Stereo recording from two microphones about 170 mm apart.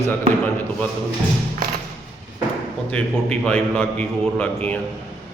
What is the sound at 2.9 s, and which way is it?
A man's voice, 5° left (ahead or behind).